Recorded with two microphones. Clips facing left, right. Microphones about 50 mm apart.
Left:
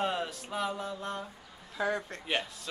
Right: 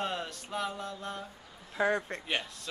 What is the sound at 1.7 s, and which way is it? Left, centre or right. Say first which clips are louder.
Speech: right 3 dB; right.